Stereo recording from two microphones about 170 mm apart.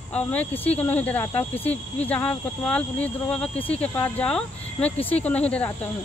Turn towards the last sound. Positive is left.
turn(degrees=10)  # may be behind; listen again after turning